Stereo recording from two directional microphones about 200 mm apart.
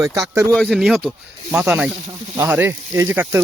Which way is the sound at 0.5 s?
Centre (ahead or behind).